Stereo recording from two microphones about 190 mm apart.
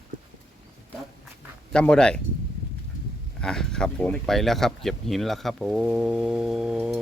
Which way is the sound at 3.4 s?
5° left (ahead or behind).